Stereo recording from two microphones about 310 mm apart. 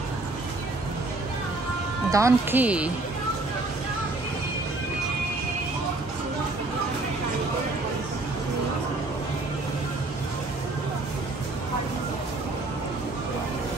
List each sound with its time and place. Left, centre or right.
2.0 s speech: centre